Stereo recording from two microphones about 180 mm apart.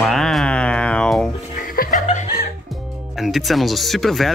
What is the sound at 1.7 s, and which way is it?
Music, 45° left (ahead or behind).